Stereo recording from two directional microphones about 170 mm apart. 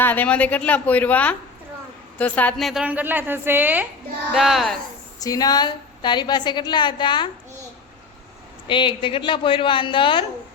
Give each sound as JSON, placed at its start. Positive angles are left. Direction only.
{"t": 0.0, "sound": "a woman's voice", "side_deg": 10}
{"t": 5.2, "sound": "a woman's voice", "side_deg": 20}
{"t": 8.6, "sound": "a woman's voice", "side_deg": 30}